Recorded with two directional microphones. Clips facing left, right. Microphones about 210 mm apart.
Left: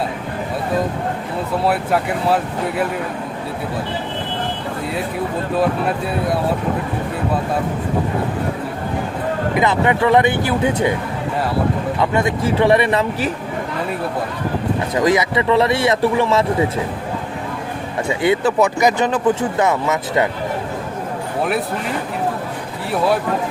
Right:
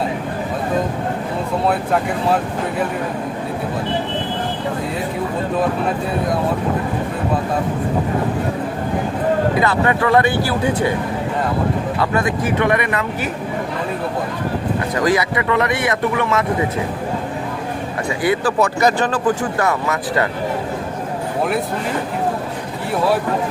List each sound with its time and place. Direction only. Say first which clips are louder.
9.6 s speech: left 1 dB; 20° left (ahead or behind)
11.9 s speech: left 2 dB; 25° left (ahead or behind)
14.9 s speech: left 2 dB; 20° left (ahead or behind)
18.2 s speech: left 2 dB; 25° left (ahead or behind)